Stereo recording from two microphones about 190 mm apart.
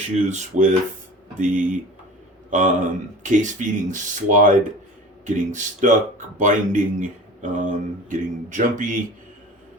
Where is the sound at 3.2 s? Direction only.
40° right (ahead or behind).